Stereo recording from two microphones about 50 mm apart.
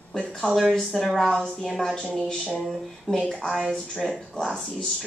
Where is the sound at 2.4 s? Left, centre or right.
Centre.